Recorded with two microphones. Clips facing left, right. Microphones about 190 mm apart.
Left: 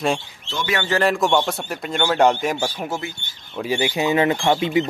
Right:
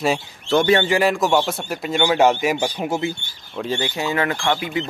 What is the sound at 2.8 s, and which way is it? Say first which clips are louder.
Speech: right 4 dB; 20° right (ahead or behind).